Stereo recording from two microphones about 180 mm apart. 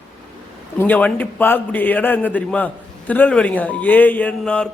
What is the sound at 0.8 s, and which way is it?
A man's voice, 10° left (ahead or behind).